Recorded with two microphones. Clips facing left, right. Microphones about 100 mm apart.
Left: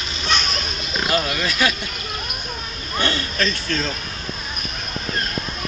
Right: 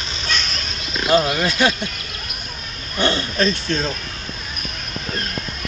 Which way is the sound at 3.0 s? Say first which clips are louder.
Right 4 dB; 25° right (ahead or behind).